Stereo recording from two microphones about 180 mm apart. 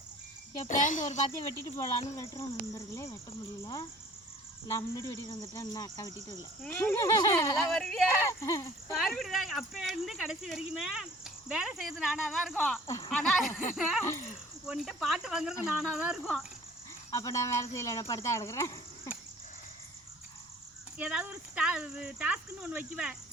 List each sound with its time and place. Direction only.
0.7 s a child's voice: 45° left (ahead or behind)
1.3 s speech: 15° left (ahead or behind)
4.7 s speech: 15° left (ahead or behind)
6.6 s speech: 10° left (ahead or behind)
7.7 s speech: centre (ahead or behind)
8.2 s speech: 15° left (ahead or behind)
9.0 s speech: centre (ahead or behind)
14.0 s speech: 15° left (ahead or behind)
14.7 s speech: centre (ahead or behind)
17.1 s speech: 15° left (ahead or behind)
21.0 s speech: 5° right (ahead or behind)